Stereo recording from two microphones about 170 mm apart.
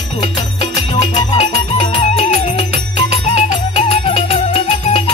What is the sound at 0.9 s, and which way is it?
Music, 35° left (ahead or behind).